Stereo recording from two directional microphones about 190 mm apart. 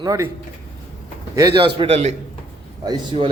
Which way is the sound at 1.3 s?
25° right (ahead or behind).